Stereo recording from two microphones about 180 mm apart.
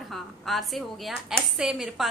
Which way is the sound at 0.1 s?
Centre (ahead or behind).